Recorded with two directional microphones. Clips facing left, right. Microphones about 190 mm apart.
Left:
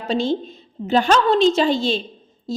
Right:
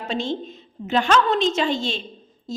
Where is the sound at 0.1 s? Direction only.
35° left (ahead or behind).